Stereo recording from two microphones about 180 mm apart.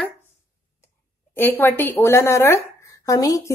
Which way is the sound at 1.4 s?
10° left (ahead or behind).